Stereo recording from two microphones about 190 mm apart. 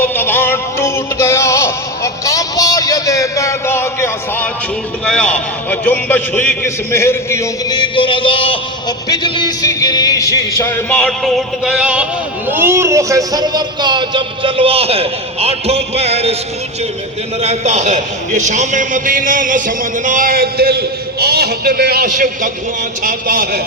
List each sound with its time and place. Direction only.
0.0 s synthetic singing: 10° left (ahead or behind)
2.2 s a sound: 20° left (ahead or behind)
5.0 s a man's voice: 5° left (ahead or behind); by 16.3 s 35° right (ahead or behind)
17.4 s a man's voice: 35° right (ahead or behind); by 23.6 s 50° right (ahead or behind)